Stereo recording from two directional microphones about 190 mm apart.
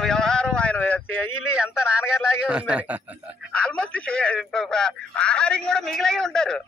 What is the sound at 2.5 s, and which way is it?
Speech, 5° right (ahead or behind).